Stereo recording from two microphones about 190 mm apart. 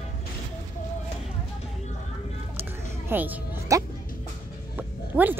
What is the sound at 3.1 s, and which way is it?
Music, 10° right (ahead or behind).